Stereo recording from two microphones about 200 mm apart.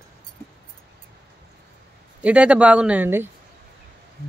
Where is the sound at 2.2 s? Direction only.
5° right (ahead or behind).